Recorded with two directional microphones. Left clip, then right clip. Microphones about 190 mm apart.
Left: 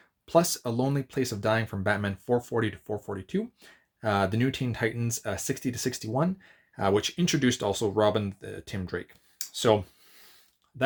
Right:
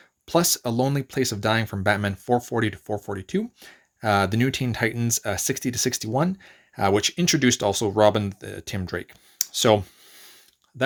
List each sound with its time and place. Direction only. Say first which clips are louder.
0.3 s speech: right 2 dB; 35° right (ahead or behind)